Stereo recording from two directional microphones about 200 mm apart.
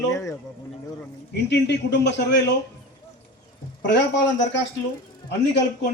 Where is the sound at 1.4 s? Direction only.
60° left (ahead or behind).